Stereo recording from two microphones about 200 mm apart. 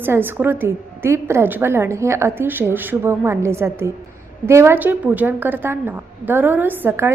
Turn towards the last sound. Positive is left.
turn(degrees=-10)  # may be behind; listen again after turning